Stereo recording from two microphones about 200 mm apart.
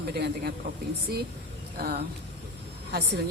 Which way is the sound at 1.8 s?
50° right (ahead or behind).